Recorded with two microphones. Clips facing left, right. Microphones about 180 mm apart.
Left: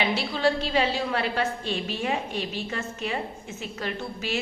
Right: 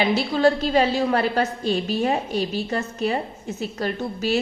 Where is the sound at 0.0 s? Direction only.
40° right (ahead or behind).